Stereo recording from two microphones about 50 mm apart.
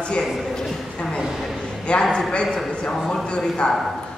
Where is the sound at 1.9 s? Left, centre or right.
Left.